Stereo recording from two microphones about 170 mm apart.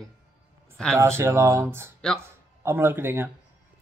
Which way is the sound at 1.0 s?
15° right (ahead or behind).